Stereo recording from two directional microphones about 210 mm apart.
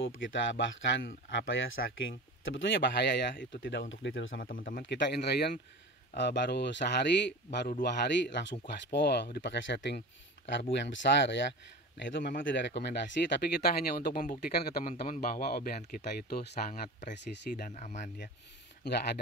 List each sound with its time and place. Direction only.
0.0 s speech: 65° left (ahead or behind)
4.4 s speech: 40° left (ahead or behind)
4.9 s speech: 55° left (ahead or behind)
8.3 s speech: 55° left (ahead or behind); by 18.1 s 35° left (ahead or behind)